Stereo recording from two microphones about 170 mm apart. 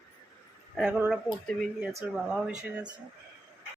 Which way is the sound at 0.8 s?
10° right (ahead or behind).